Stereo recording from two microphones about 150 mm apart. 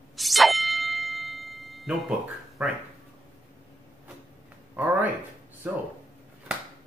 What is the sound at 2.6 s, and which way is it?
Speech, 10° right (ahead or behind).